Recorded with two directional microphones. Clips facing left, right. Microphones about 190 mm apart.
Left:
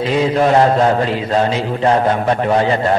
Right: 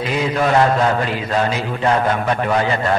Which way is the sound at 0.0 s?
30° left (ahead or behind).